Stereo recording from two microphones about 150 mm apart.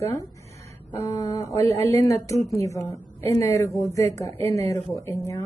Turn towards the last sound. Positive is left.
turn(degrees=20)  # may be behind; listen again after turning